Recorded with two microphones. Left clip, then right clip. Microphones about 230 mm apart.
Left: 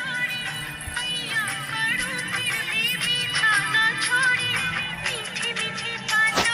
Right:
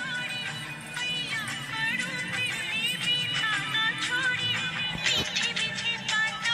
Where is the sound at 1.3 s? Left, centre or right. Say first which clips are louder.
Left 6 dB; left.